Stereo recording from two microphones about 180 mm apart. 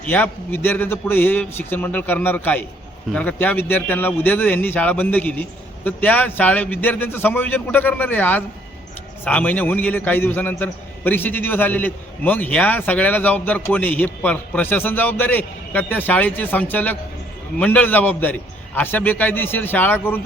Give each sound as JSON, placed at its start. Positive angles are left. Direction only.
{"t": 0.0, "sound": "a man's voice", "side_deg": 10}